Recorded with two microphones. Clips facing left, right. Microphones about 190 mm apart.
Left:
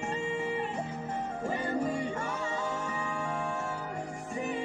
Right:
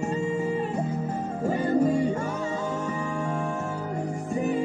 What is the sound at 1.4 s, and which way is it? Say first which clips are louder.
Music: right 10 dB; 40° right (ahead or behind).